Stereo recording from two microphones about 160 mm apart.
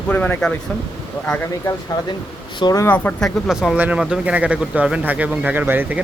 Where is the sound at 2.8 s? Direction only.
10° left (ahead or behind).